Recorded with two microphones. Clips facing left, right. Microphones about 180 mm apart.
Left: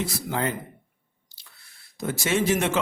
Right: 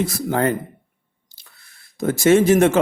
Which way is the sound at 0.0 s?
50° right (ahead or behind).